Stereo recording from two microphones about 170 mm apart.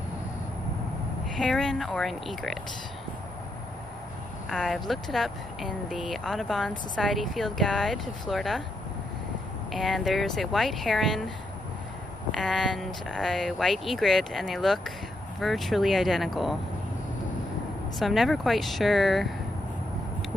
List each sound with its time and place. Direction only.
1.4 s speech: centre (ahead or behind)
4.5 s speech: centre (ahead or behind)
9.7 s speech: centre (ahead or behind)
17.9 s speech: centre (ahead or behind)